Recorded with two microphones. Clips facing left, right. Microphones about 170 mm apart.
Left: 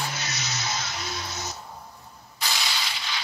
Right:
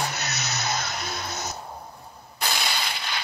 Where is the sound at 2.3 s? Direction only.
55° right (ahead or behind).